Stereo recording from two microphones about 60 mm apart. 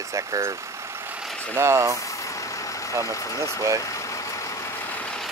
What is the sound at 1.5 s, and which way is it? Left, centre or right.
Speech, right.